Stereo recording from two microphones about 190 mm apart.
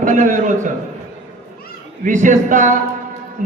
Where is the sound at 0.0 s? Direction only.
40° right (ahead or behind).